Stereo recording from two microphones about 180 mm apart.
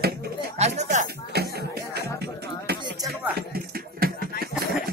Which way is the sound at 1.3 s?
65° right (ahead or behind).